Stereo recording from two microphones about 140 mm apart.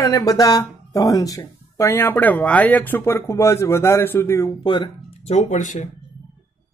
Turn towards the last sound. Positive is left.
turn(degrees=60)  # may be behind; listen again after turning